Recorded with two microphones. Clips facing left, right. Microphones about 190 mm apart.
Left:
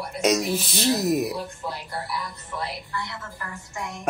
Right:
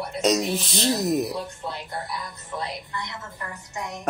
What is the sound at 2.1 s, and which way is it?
A woman's voice, 20° right (ahead or behind).